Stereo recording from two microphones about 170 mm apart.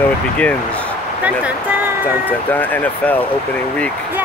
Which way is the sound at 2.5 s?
10° left (ahead or behind).